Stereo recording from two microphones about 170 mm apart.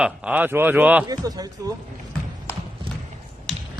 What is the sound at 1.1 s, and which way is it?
Speech, 20° right (ahead or behind).